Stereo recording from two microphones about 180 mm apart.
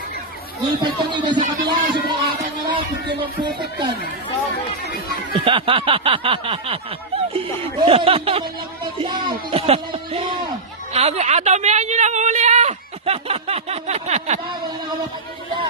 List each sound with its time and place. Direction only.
1.1 s speech: 25° right (ahead or behind)
5.3 s speech: 30° right (ahead or behind)